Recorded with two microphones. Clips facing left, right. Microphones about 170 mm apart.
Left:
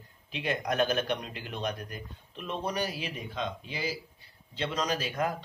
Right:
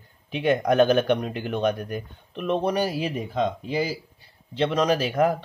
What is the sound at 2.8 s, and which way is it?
Speech, 40° right (ahead or behind).